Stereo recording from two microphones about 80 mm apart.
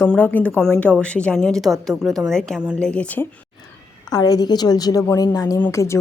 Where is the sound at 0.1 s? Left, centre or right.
Left.